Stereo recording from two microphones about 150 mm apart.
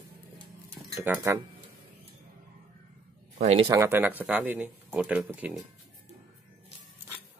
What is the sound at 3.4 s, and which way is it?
Speech, 40° right (ahead or behind).